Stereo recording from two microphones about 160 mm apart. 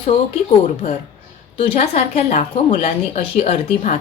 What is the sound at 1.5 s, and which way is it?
A woman's voice, 40° left (ahead or behind).